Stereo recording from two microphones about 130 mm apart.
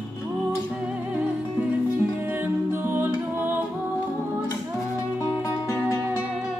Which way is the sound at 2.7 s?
15° right (ahead or behind).